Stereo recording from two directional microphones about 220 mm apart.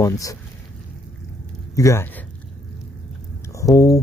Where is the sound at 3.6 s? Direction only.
15° left (ahead or behind).